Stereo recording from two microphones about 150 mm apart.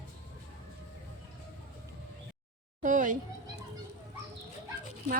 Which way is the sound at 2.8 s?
60° right (ahead or behind).